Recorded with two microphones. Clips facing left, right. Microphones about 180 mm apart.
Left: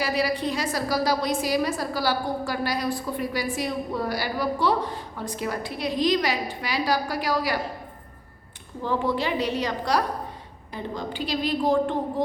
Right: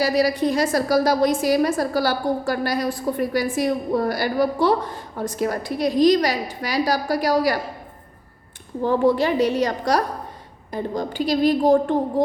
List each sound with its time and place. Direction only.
0.0 s a woman's voice: 40° right (ahead or behind)
8.8 s a woman's voice: 45° right (ahead or behind)